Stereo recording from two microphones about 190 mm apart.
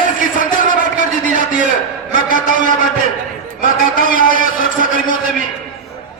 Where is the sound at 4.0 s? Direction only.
45° left (ahead or behind).